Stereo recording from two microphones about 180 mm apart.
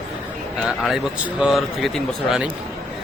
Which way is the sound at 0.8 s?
5° right (ahead or behind).